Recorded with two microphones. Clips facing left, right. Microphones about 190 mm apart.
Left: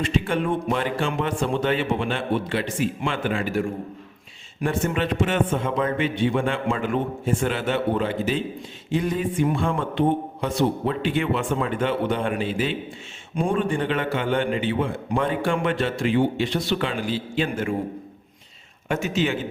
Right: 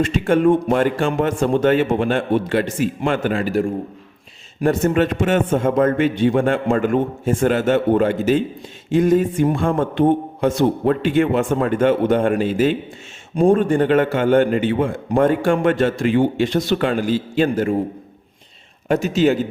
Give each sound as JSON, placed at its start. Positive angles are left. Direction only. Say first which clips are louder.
{"t": 0.0, "sound": "a man's voice", "louder": "right 8 dB", "side_deg": -45}
{"t": 4.6, "sound": "a man's voice", "louder": "right 7 dB", "side_deg": -40}
{"t": 18.9, "sound": "a man's voice", "louder": "right 7 dB", "side_deg": -35}